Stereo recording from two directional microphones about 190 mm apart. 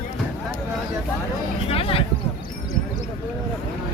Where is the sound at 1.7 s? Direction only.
30° left (ahead or behind).